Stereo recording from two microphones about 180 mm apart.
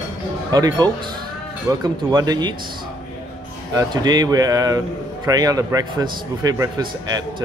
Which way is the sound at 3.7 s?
20° right (ahead or behind).